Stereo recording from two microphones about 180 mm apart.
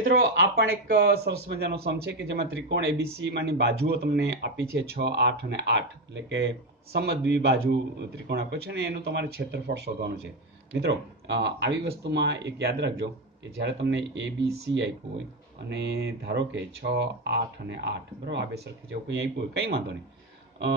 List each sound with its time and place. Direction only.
0.1 s speech: 60° right (ahead or behind); by 14.9 s 80° right
15.7 s speech: 70° right (ahead or behind)